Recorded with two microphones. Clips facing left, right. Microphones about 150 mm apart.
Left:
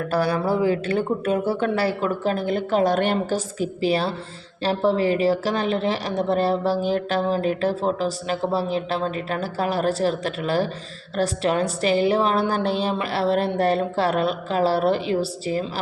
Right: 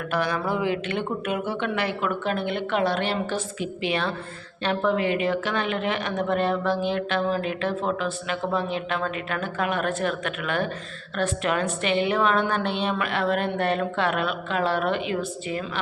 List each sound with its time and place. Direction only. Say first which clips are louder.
0.0 s a woman's voice: left 4 dB; 35° left (ahead or behind)